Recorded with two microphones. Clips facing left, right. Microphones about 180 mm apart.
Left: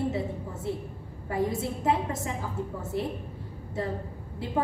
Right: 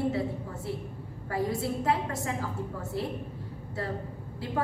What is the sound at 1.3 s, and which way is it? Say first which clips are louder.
A woman's voice: left 1 dB; 20° left (ahead or behind).